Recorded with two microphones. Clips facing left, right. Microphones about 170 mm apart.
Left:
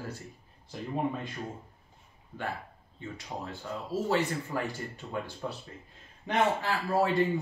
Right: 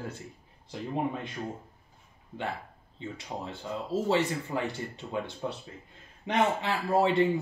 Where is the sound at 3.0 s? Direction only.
20° right (ahead or behind).